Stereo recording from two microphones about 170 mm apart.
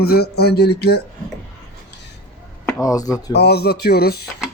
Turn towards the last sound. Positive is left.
turn(degrees=70)  # may be behind; listen again after turning